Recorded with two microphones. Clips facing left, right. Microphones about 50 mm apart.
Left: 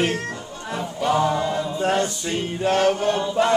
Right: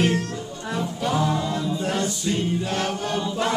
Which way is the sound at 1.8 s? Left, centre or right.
Left.